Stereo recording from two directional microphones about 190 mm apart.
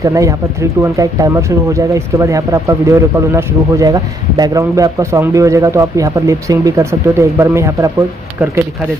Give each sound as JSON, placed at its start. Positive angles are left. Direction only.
{"t": 0.0, "sound": "speech", "side_deg": -15}